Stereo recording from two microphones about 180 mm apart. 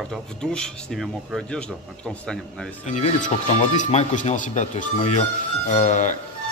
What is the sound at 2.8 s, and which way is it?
Speech, 40° left (ahead or behind).